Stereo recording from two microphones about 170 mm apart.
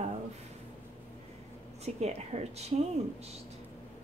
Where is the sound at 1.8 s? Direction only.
40° right (ahead or behind).